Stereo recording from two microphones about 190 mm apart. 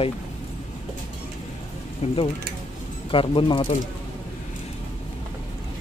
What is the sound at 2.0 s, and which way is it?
Speech, 35° left (ahead or behind).